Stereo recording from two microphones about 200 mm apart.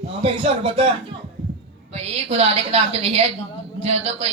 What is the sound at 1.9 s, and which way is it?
A woman's voice, 30° right (ahead or behind).